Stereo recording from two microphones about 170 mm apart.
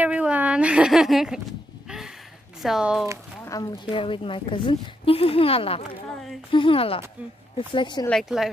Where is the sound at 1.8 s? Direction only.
5° right (ahead or behind).